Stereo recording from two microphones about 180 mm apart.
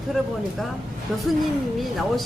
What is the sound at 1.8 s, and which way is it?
Speech, centre (ahead or behind).